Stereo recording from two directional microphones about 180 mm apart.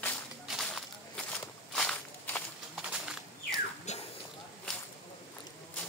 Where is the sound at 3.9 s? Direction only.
40° left (ahead or behind).